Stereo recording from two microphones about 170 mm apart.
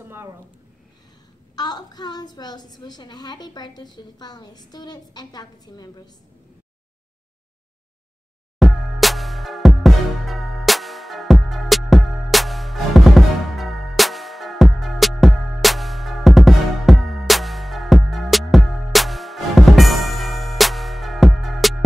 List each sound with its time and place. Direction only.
0.0 s a sound: 15° right (ahead or behind)
1.5 s a woman's voice: 25° left (ahead or behind)
8.5 s music: centre (ahead or behind)